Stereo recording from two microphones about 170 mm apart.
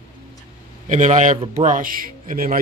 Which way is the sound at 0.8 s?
45° right (ahead or behind).